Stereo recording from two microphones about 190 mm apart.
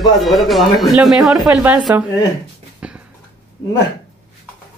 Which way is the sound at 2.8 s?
5° right (ahead or behind).